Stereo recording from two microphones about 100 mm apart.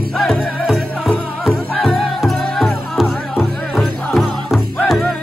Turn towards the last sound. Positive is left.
turn(degrees=0)  # may be behind; listen again after turning